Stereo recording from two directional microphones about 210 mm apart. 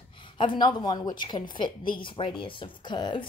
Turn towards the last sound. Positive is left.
turn(degrees=20)  # may be behind; listen again after turning